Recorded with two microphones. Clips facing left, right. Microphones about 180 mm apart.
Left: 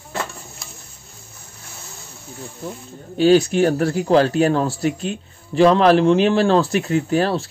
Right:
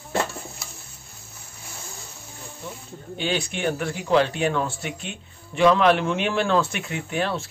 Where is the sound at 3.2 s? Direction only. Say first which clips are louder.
Left 12 dB; 40° left (ahead or behind).